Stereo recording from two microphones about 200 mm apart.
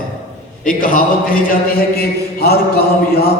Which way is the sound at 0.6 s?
45° left (ahead or behind).